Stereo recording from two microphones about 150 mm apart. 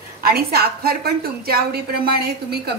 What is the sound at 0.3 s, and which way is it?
A woman's voice, 90° right.